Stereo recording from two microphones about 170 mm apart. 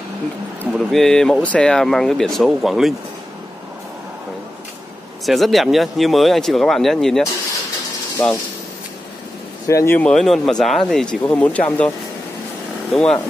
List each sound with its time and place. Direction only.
0.7 s speech: centre (ahead or behind)
5.2 s speech: centre (ahead or behind)
9.7 s speech: 15° left (ahead or behind)
12.9 s speech: centre (ahead or behind)